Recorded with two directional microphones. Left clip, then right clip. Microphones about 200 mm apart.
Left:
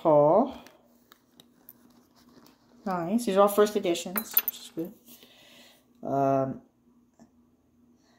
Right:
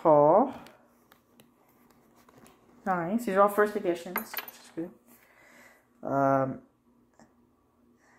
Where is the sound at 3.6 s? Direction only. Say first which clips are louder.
Left 2 dB; 45° left (ahead or behind).